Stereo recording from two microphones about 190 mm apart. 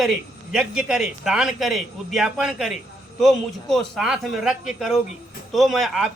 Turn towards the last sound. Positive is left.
turn(degrees=0)  # may be behind; listen again after turning